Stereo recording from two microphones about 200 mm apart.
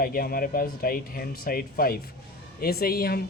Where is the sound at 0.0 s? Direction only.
50° left (ahead or behind).